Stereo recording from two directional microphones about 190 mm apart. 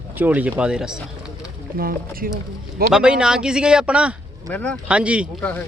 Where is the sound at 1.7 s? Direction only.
50° right (ahead or behind).